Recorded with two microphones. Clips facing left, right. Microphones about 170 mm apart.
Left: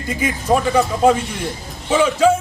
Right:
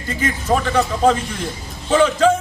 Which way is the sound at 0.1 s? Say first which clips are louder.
Left 1 dB; 10° left (ahead or behind).